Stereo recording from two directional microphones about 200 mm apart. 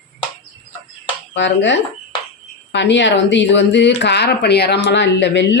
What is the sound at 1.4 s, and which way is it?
Speech, 60° left (ahead or behind).